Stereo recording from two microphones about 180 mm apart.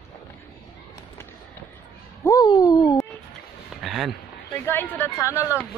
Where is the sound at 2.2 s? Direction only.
20° left (ahead or behind).